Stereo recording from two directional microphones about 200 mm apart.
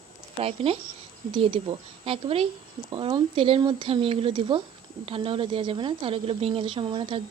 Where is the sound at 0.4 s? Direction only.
30° right (ahead or behind).